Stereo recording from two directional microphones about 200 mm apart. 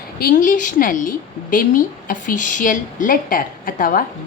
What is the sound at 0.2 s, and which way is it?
A woman's voice, 45° left (ahead or behind).